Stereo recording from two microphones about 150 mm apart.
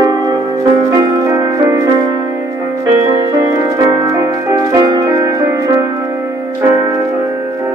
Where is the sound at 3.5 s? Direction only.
20° right (ahead or behind).